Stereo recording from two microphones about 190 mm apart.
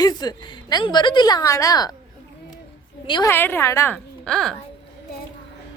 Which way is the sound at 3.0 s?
25° left (ahead or behind).